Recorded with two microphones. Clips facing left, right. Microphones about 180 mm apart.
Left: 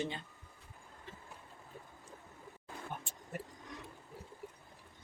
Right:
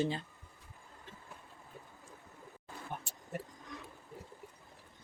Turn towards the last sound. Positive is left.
turn(degrees=-40)  # may be behind; listen again after turning